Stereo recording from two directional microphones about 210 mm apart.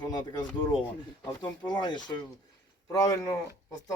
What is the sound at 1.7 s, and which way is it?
Speech, 20° left (ahead or behind).